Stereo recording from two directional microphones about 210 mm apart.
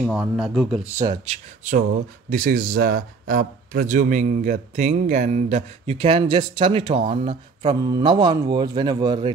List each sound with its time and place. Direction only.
0.0 s speech: 5° right (ahead or behind)
0.9 s speech: 20° right (ahead or behind)
1.2 s speech: 35° right (ahead or behind)